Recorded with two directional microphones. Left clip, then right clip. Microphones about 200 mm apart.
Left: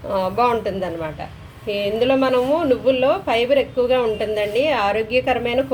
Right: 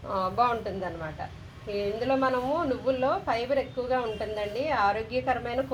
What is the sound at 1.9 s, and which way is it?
A woman's voice, 20° left (ahead or behind).